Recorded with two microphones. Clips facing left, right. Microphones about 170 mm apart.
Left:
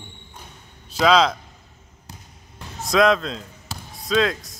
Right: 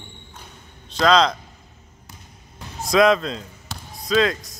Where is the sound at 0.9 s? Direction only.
5° left (ahead or behind).